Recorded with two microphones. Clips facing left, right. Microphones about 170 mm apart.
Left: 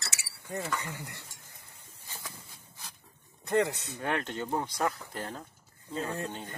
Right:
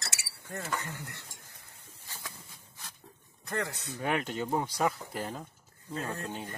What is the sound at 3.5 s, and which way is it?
Speech, 20° left (ahead or behind).